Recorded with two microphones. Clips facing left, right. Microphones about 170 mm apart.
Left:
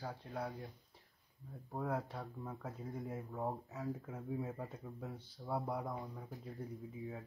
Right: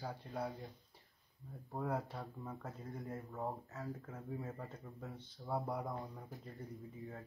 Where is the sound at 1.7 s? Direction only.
Centre (ahead or behind).